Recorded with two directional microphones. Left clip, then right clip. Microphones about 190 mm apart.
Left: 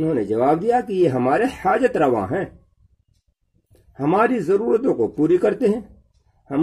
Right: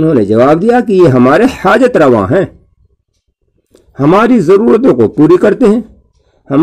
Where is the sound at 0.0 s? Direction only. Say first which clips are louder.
Right 11 dB; 40° right (ahead or behind).